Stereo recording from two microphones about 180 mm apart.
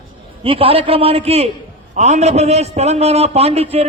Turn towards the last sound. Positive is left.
turn(degrees=-35)  # may be behind; listen again after turning